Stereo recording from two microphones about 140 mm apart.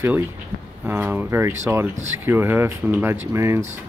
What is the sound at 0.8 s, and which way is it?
Speech, 15° right (ahead or behind).